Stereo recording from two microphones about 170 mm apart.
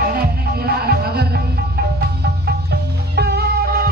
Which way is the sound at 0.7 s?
65° right (ahead or behind).